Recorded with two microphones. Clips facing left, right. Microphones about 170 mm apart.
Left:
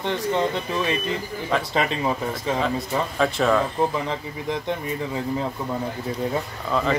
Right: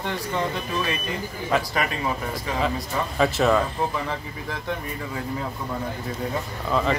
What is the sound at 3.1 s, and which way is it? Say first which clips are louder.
Speech: right 1 dB; 5° right (ahead or behind).